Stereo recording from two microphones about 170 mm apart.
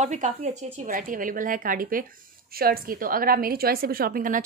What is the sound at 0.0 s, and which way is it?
Speech, 45° right (ahead or behind).